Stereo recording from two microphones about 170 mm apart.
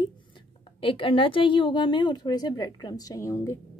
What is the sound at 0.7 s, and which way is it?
A woman's voice, 30° left (ahead or behind).